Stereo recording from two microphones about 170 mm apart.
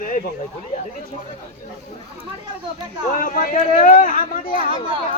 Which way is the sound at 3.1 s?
55° left (ahead or behind).